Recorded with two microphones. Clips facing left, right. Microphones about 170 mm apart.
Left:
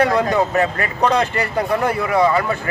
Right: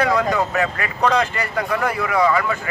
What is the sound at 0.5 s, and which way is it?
A man's voice, 40° left (ahead or behind).